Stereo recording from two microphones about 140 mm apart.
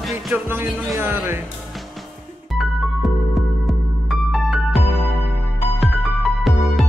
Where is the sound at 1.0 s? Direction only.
15° right (ahead or behind).